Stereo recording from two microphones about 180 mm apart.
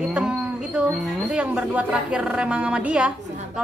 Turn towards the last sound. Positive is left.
turn(degrees=-5)  # may be behind; listen again after turning